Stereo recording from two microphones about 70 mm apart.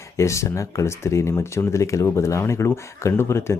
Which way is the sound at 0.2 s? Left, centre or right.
Left.